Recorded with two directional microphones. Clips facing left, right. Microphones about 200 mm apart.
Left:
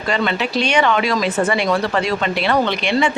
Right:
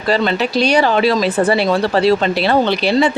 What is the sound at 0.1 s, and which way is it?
Speech, 35° right (ahead or behind).